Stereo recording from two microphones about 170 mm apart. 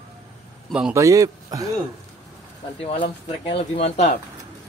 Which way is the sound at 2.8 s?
30° left (ahead or behind).